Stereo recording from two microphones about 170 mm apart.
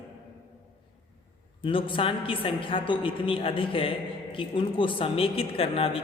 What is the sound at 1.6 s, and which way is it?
A woman's voice, 30° left (ahead or behind).